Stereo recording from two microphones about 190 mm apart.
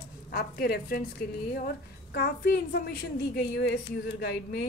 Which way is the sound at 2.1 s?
55° left (ahead or behind).